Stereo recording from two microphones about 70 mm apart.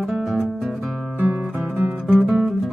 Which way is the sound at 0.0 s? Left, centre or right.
Centre.